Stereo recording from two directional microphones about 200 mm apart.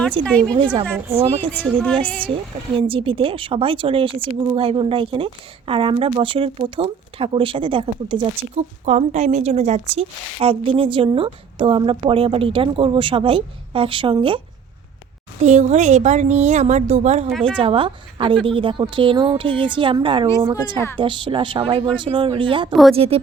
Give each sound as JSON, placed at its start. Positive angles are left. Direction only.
{"t": 0.2, "sound": "a woman's voice", "side_deg": 5}
{"t": 0.5, "sound": "a woman's voice", "side_deg": -20}
{"t": 1.5, "sound": "a woman's voice", "side_deg": 5}
{"t": 2.7, "sound": "a woman's voice", "side_deg": -25}
{"t": 15.4, "sound": "a woman's voice", "side_deg": -35}
{"t": 22.7, "sound": "a woman's voice", "side_deg": 0}
{"t": 23.0, "sound": "a woman's voice", "side_deg": -30}